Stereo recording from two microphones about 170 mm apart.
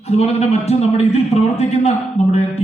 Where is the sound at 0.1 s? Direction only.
40° left (ahead or behind).